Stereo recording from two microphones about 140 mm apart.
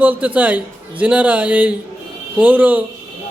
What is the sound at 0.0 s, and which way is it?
A man's voice, 10° right (ahead or behind).